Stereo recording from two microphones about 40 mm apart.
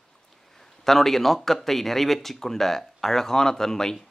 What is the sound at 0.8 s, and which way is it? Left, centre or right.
Speech, centre.